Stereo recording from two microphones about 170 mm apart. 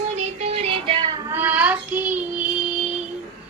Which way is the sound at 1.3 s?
10° right (ahead or behind).